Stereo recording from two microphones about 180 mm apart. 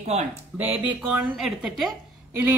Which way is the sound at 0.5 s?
10° right (ahead or behind).